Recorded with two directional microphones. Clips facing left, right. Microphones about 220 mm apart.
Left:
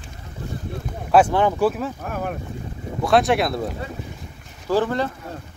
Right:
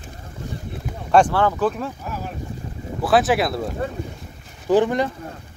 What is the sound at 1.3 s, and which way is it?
Speech, 15° left (ahead or behind).